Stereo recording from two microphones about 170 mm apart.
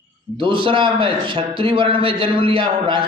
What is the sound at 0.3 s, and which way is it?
A man's voice, 30° right (ahead or behind).